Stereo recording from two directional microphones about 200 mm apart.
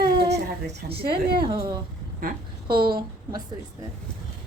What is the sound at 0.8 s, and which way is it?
Speech, 50° right (ahead or behind).